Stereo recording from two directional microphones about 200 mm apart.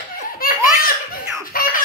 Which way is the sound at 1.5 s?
45° left (ahead or behind).